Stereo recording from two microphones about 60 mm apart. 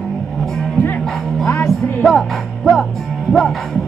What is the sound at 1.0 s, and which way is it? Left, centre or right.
Music, centre.